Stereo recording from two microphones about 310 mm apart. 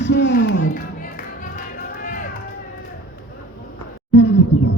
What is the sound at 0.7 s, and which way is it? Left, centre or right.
Music, left.